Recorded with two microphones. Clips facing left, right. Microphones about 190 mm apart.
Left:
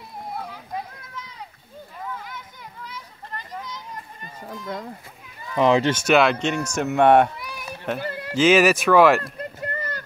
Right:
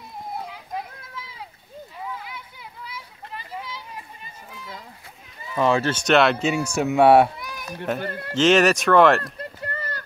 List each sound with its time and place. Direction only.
2.1 s children playing: 10° right (ahead or behind)
5.6 s speech: 20° left (ahead or behind)
9.2 s a sound: 20° left (ahead or behind)